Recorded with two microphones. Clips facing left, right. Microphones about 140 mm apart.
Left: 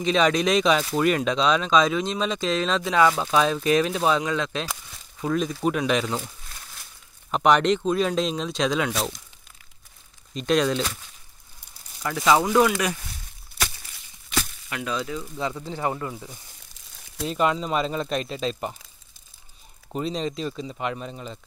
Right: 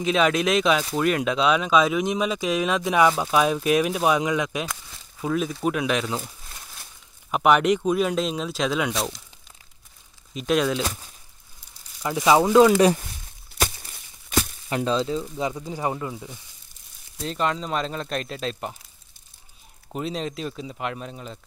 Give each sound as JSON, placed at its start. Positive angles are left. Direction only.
{"t": 0.0, "sound": "speech", "side_deg": -5}
{"t": 10.3, "sound": "speech", "side_deg": -5}
{"t": 12.0, "sound": "speech", "side_deg": -20}
{"t": 13.6, "sound": "a sound", "side_deg": -35}
{"t": 17.3, "sound": "speech", "side_deg": 5}
{"t": 19.9, "sound": "speech", "side_deg": -5}